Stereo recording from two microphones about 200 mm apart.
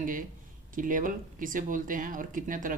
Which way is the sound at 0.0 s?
40° right (ahead or behind).